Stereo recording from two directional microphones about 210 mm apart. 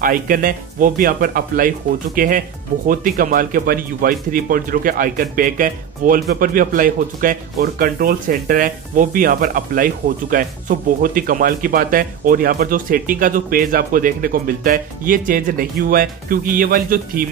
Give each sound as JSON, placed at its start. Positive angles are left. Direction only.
{"t": 0.0, "sound": "speech", "side_deg": -40}